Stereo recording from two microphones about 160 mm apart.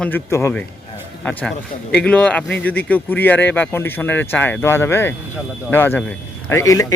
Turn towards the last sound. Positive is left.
turn(degrees=20)  # may be behind; listen again after turning